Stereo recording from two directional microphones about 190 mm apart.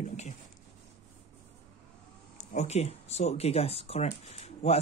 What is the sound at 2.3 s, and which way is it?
Speech, 35° left (ahead or behind).